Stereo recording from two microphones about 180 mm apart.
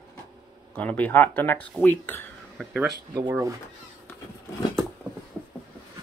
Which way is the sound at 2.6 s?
Centre (ahead or behind).